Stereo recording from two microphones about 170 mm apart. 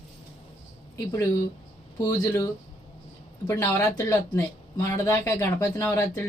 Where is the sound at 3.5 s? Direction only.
15° left (ahead or behind).